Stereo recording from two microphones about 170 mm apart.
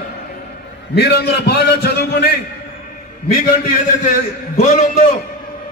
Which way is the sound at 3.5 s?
45° left (ahead or behind).